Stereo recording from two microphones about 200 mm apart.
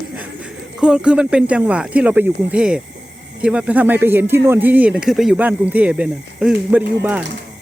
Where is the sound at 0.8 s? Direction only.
5° right (ahead or behind).